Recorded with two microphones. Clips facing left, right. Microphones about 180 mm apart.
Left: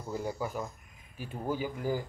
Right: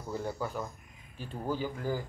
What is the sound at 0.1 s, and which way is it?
A man's voice, 10° left (ahead or behind).